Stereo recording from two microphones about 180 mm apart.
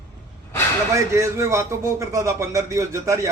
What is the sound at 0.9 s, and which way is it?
A man's voice, 15° right (ahead or behind).